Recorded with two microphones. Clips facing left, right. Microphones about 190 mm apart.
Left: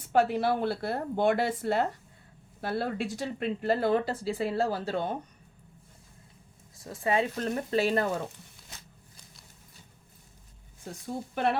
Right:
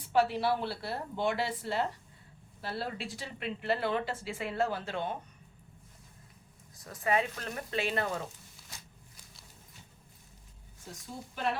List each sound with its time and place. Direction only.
0.0 s a woman's voice: 50° left (ahead or behind)
6.7 s speech: 25° left (ahead or behind)
11.0 s speech: 60° left (ahead or behind)